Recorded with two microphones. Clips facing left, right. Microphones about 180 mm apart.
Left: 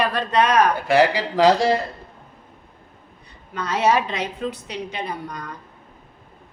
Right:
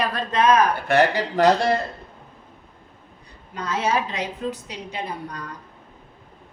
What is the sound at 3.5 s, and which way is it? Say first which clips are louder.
A woman's voice: left 4 dB; 70° left (ahead or behind).